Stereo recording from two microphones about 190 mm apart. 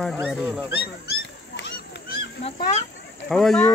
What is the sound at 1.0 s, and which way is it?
Goose, 60° left (ahead or behind).